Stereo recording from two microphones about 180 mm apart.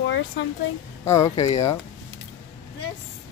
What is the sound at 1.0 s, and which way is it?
Speech, 15° left (ahead or behind).